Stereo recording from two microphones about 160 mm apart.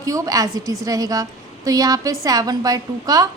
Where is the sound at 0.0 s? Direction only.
20° right (ahead or behind).